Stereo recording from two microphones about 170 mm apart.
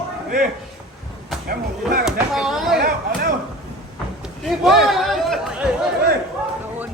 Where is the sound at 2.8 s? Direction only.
65° right (ahead or behind).